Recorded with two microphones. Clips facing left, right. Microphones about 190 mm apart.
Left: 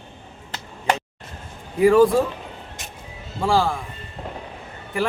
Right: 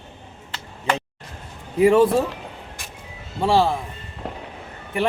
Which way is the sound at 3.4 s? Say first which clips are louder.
Right 2 dB; 25° right (ahead or behind).